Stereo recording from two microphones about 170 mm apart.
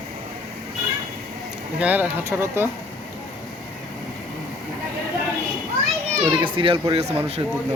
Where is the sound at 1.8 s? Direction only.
10° right (ahead or behind).